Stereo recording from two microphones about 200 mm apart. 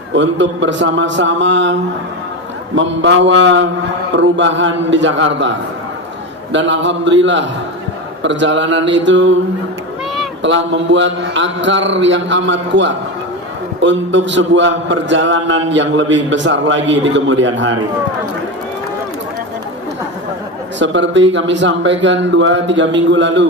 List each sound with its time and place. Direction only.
0.1 s a man's voice: 65° right (ahead or behind)
2.7 s a man's voice: 65° right (ahead or behind)
10.4 s a man's voice: 65° right (ahead or behind)
20.7 s a man's voice: 65° right (ahead or behind)